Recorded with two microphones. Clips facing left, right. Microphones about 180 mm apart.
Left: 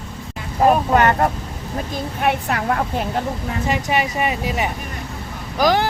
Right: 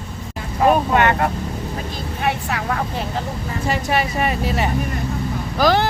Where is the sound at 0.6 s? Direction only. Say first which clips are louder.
Left 1 dB; 40° left (ahead or behind).